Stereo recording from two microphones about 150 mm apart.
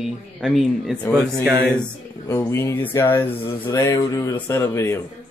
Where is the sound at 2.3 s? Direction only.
15° left (ahead or behind).